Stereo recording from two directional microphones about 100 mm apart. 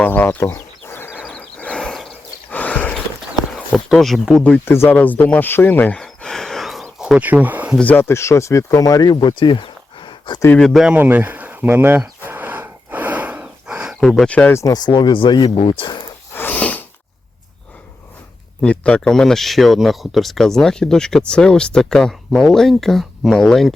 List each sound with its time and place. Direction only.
0.0 s a sound: 20° left (ahead or behind)
2.5 s a sound: 15° left (ahead or behind)
3.8 s speech: centre (ahead or behind)
4.6 s speech: 25° left (ahead or behind); by 6.8 s centre (ahead or behind)
7.0 s speech: 10° right (ahead or behind)
7.8 s speech: 20° left (ahead or behind); by 10.4 s 50° left (ahead or behind)
10.6 s speech: centre (ahead or behind)
10.9 s a sound: 20° right (ahead or behind)
14.0 s speech: 5° left (ahead or behind)
14.5 s speech: 35° left (ahead or behind); by 15.4 s 55° left (ahead or behind)
15.4 s speech: 65° left (ahead or behind); by 16.1 s 50° left (ahead or behind)
16.3 s a sound: 20° left (ahead or behind)
18.6 s speech: 10° left (ahead or behind)